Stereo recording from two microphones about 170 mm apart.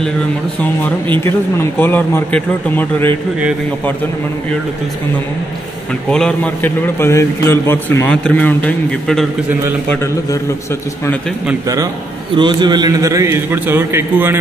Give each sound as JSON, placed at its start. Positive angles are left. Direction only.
{"t": 1.2, "sound": "a man's voice", "side_deg": 15}
{"t": 6.0, "sound": "a man's voice", "side_deg": 5}
{"t": 11.6, "sound": "a man's voice", "side_deg": -20}